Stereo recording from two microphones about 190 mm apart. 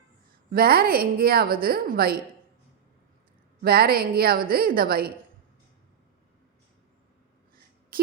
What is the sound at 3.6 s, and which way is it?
A woman's voice, 55° right (ahead or behind).